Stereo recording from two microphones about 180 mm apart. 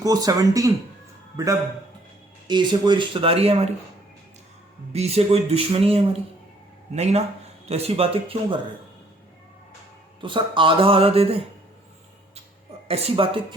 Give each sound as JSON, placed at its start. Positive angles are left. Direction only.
{"t": 0.0, "sound": "speech", "side_deg": -20}
{"t": 4.9, "sound": "speech", "side_deg": -35}
{"t": 10.2, "sound": "speech", "side_deg": -25}
{"t": 12.9, "sound": "speech", "side_deg": -35}